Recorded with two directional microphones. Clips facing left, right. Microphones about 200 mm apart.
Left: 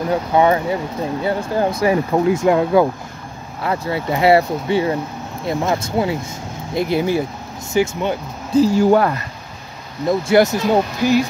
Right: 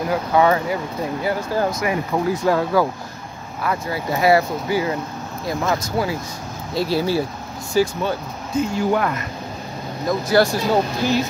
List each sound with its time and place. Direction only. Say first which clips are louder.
0.1 s speech: left 2 dB; 25° left (ahead or behind)
8.5 s speech: left 7 dB; 35° left (ahead or behind)
10.0 s speech: left 3 dB; 25° left (ahead or behind)